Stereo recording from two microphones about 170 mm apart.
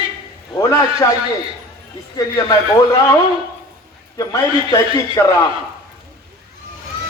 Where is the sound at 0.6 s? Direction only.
20° left (ahead or behind).